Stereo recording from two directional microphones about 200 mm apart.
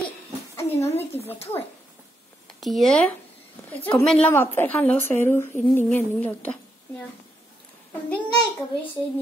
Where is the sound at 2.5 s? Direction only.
Centre (ahead or behind).